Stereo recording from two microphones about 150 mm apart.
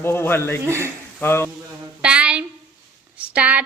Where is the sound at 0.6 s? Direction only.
20° right (ahead or behind).